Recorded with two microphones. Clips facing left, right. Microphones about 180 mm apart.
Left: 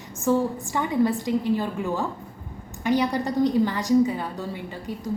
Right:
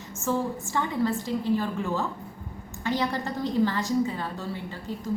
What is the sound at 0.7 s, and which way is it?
A woman's voice, 15° left (ahead or behind).